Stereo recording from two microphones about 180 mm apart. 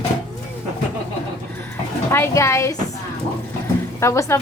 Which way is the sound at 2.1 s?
15° left (ahead or behind).